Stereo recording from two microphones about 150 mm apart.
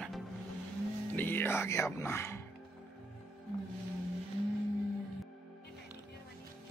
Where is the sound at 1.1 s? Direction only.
15° left (ahead or behind).